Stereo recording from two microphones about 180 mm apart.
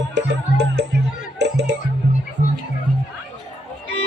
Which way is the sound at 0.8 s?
70° right (ahead or behind).